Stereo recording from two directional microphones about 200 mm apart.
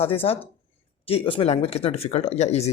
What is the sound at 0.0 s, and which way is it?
A woman's voice, 30° left (ahead or behind).